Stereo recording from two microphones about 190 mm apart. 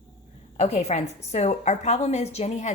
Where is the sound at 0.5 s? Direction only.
35° left (ahead or behind).